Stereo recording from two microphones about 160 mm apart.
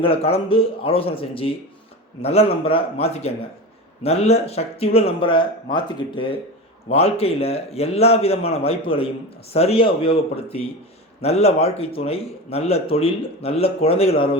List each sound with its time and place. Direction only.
0.0 s speech: 35° left (ahead or behind)